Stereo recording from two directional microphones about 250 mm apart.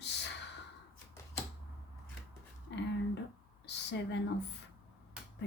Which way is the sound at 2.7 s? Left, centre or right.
Left.